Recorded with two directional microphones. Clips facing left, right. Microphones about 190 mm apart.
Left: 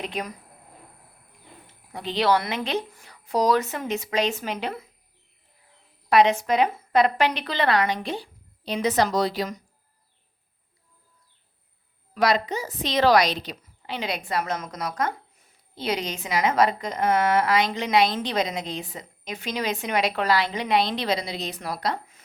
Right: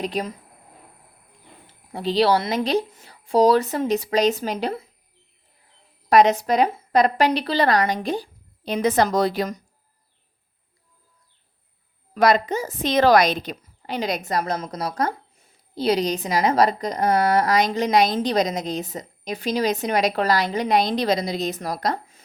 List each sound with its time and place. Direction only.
0.0 s a woman's voice: 35° right (ahead or behind)
1.6 s a woman's voice: 35° right (ahead or behind)
6.1 s a woman's voice: 40° right (ahead or behind)
12.1 s a woman's voice: 50° right (ahead or behind)